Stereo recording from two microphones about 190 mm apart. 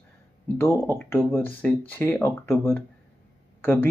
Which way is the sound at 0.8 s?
10° left (ahead or behind).